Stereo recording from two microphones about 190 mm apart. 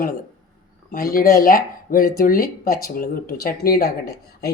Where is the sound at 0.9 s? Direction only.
50° left (ahead or behind).